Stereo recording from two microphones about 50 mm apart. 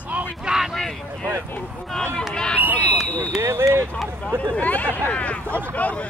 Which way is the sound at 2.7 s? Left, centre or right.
Left.